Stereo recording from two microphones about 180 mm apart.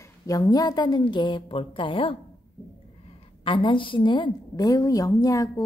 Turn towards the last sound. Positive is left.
turn(degrees=20)  # may be behind; listen again after turning